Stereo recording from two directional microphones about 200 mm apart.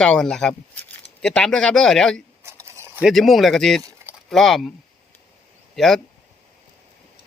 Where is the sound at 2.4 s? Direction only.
15° right (ahead or behind).